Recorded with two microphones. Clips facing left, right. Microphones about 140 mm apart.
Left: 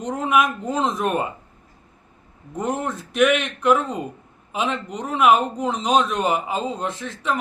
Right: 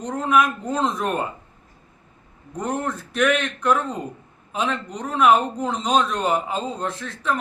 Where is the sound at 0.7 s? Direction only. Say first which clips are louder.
Even; centre (ahead or behind).